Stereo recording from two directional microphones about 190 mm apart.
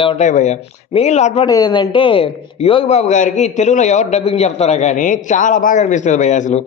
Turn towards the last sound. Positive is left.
turn(degrees=40)  # may be behind; listen again after turning